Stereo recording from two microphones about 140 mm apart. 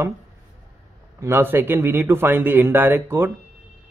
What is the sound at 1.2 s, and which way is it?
Speech, 15° right (ahead or behind).